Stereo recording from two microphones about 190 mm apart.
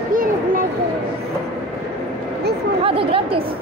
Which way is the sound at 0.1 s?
45° right (ahead or behind).